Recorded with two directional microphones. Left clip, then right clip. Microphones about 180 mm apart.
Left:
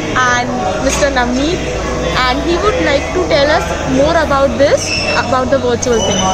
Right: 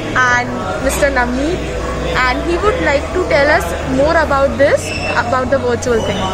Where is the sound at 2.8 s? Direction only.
10° right (ahead or behind).